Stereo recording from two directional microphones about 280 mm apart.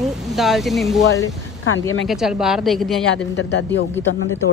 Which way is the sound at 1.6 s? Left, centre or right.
Left.